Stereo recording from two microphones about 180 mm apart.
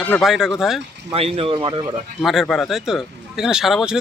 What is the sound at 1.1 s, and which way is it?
Speech, 30° right (ahead or behind).